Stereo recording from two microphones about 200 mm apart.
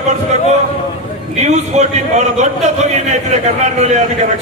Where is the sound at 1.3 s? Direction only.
35° right (ahead or behind).